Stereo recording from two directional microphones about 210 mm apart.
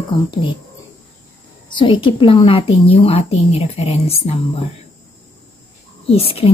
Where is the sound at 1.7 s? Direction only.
25° left (ahead or behind).